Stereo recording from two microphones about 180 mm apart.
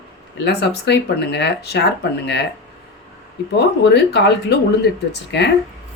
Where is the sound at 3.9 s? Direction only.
65° left (ahead or behind).